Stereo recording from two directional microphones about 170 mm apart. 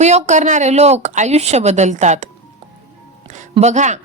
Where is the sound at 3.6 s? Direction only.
45° right (ahead or behind).